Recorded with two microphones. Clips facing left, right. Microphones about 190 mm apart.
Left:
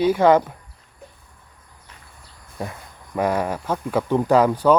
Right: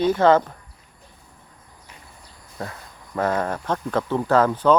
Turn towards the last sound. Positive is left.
turn(degrees=10)  # may be behind; listen again after turning